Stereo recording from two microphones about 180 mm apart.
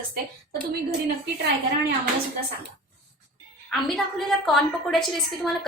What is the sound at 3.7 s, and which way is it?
A woman's voice, centre (ahead or behind).